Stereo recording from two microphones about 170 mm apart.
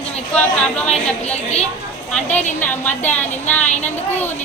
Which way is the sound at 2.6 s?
10° left (ahead or behind).